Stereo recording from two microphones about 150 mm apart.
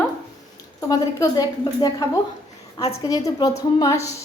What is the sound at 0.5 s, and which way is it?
A woman's voice, 25° left (ahead or behind).